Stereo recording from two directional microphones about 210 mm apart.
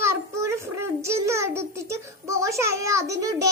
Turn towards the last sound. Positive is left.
turn(degrees=-15)  # may be behind; listen again after turning